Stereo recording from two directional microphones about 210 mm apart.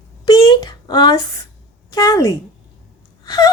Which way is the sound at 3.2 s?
20° left (ahead or behind).